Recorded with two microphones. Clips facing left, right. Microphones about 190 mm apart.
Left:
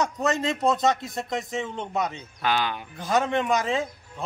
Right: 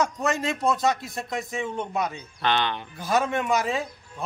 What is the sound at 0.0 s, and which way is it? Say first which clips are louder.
Speech: even; 20° left (ahead or behind).